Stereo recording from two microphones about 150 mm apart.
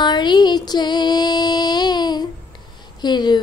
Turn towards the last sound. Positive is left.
turn(degrees=30)  # may be behind; listen again after turning